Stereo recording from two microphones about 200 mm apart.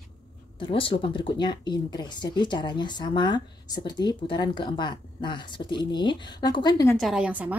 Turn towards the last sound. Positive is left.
turn(degrees=-10)  # may be behind; listen again after turning